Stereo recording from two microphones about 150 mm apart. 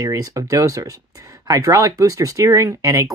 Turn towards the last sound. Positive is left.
turn(degrees=-20)  # may be behind; listen again after turning